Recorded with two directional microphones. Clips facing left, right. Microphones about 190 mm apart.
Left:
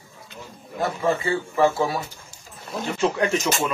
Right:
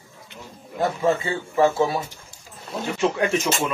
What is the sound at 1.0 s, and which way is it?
Speech, 20° right (ahead or behind).